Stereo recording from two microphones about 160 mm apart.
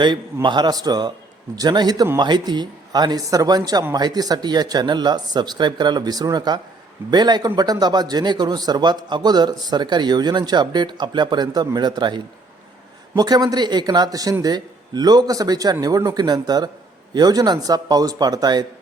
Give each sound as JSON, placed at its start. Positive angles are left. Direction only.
{"t": 0.4, "sound": "a man's voice", "side_deg": -30}